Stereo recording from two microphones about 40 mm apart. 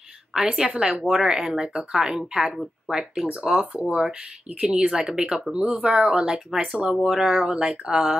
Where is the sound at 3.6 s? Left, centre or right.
Right.